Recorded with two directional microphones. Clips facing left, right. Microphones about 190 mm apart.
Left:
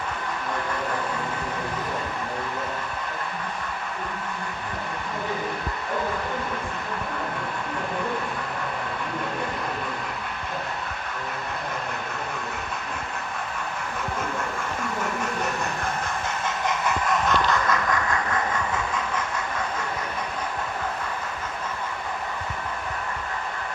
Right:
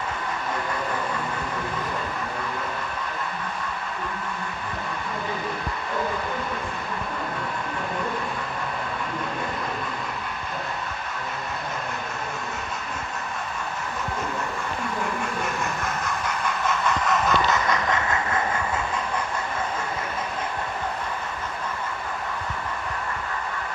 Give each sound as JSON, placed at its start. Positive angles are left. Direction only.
{"t": 16.2, "sound": "vehicle", "side_deg": 20}
{"t": 16.8, "sound": "vehicle", "side_deg": 5}
{"t": 17.5, "sound": "vehicle", "side_deg": -20}